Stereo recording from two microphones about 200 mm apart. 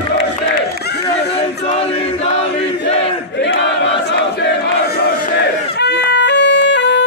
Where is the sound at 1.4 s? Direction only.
30° left (ahead or behind).